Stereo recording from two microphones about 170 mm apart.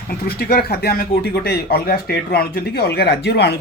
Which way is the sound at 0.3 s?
65° left (ahead or behind).